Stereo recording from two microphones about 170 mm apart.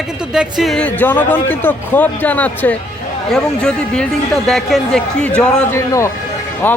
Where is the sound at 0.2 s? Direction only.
5° right (ahead or behind).